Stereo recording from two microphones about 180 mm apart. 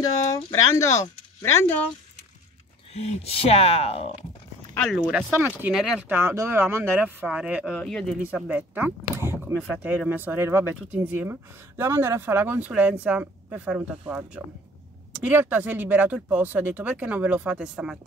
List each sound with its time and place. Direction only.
0.3 s speech: 15° left (ahead or behind)
2.9 s speech: 35° left (ahead or behind)
4.7 s speech: centre (ahead or behind)
7.7 s speech: 5° left (ahead or behind)
8.2 s speech: 5° right (ahead or behind)